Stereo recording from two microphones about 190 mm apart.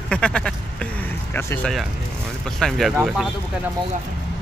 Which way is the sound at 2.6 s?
Centre (ahead or behind).